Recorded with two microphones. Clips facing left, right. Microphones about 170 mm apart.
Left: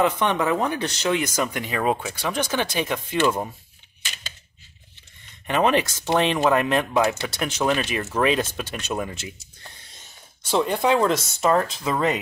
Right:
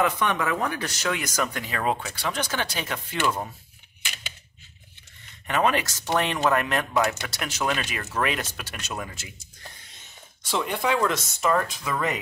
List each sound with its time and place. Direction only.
0.0 s speech: 25° left (ahead or behind)
5.5 s speech: 20° left (ahead or behind)
10.5 s speech: 30° left (ahead or behind)